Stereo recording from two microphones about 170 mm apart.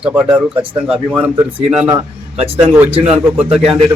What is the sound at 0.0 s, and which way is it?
A man's voice, 5° right (ahead or behind).